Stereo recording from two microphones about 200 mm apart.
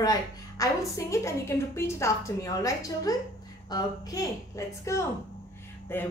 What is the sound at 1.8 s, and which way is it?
Child singing, 15° left (ahead or behind).